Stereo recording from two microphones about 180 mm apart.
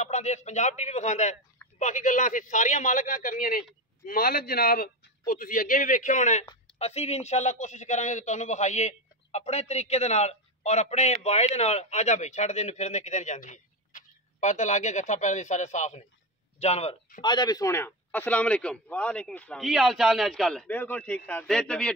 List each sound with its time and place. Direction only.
0.0 s a man's voice: 40° left (ahead or behind); by 21.9 s 5° left (ahead or behind)